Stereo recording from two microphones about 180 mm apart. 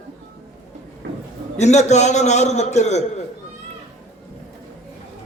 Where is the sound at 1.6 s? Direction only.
40° left (ahead or behind).